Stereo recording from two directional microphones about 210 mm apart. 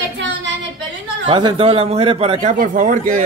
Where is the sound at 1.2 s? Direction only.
25° right (ahead or behind).